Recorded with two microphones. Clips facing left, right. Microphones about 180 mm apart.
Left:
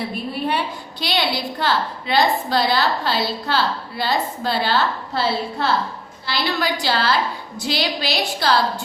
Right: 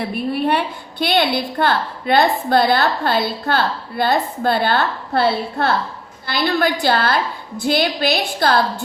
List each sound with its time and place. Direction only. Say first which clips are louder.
0.4 s a woman's voice: right 4 dB; 55° right (ahead or behind)